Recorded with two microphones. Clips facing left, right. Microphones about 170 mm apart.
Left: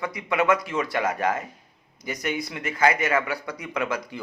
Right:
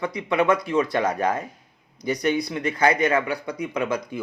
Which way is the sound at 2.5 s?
25° right (ahead or behind).